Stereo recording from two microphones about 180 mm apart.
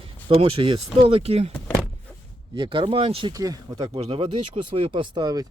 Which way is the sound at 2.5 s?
25° right (ahead or behind).